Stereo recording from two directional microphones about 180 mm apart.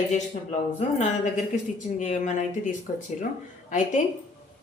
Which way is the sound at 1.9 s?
40° left (ahead or behind).